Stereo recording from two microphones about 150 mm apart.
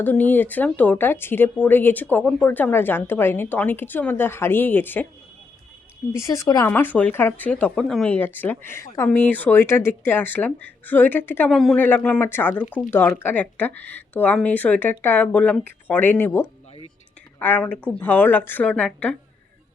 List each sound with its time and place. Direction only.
0.0 s speech: 10° left (ahead or behind)
6.1 s speech: 20° left (ahead or behind)
6.7 s speech: 10° left (ahead or behind)
11.5 s speech: centre (ahead or behind)